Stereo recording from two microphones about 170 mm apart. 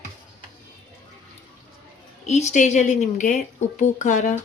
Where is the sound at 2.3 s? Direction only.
40° left (ahead or behind).